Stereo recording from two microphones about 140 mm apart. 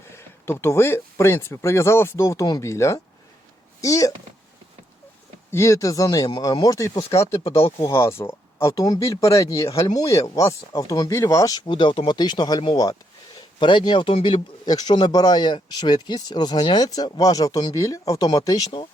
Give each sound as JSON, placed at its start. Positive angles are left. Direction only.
{"t": 0.1, "sound": "speech", "side_deg": 15}
{"t": 5.5, "sound": "speech", "side_deg": 20}
{"t": 7.4, "sound": "speech", "side_deg": 45}
{"t": 7.8, "sound": "speech", "side_deg": 20}